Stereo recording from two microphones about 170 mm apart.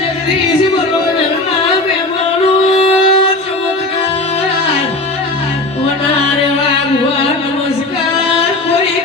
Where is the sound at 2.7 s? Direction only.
35° left (ahead or behind).